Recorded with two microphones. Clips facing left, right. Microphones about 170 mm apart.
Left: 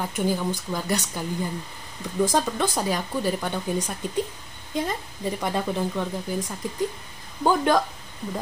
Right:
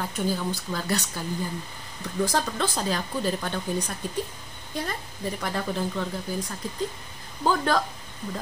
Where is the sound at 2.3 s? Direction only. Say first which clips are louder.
Left 3 dB; 15° left (ahead or behind).